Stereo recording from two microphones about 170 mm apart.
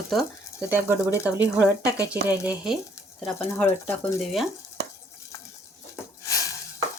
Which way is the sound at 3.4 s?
15° left (ahead or behind).